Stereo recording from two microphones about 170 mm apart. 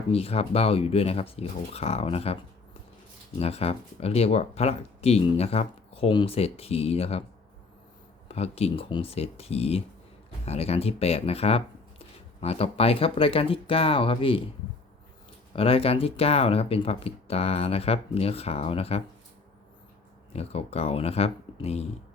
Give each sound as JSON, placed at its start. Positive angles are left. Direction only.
{"t": 0.1, "sound": "speech", "side_deg": 35}
{"t": 8.3, "sound": "speech", "side_deg": 35}
{"t": 15.5, "sound": "speech", "side_deg": 35}
{"t": 20.3, "sound": "speech", "side_deg": 35}